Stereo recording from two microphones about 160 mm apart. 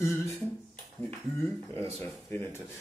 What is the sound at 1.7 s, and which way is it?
Speech, 15° left (ahead or behind).